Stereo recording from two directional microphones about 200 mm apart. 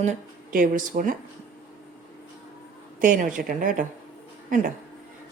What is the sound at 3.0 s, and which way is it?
Speech, 40° right (ahead or behind).